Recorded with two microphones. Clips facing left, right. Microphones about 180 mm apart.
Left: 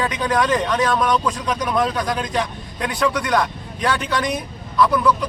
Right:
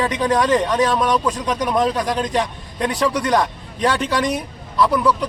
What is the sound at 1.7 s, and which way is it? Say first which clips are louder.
Speech: right 2 dB; 20° right (ahead or behind).